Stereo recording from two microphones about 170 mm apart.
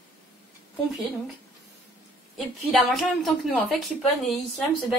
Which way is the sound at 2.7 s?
Centre (ahead or behind).